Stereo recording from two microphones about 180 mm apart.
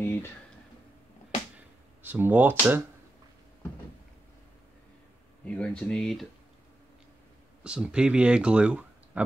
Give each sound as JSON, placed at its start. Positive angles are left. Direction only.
{"t": 0.0, "sound": "a sound", "side_deg": 15}
{"t": 2.0, "sound": "speech", "side_deg": -10}
{"t": 5.4, "sound": "speech", "side_deg": 5}
{"t": 7.6, "sound": "speech", "side_deg": -5}